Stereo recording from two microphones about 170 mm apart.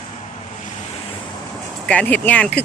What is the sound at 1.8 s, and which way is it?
Speech, 10° left (ahead or behind).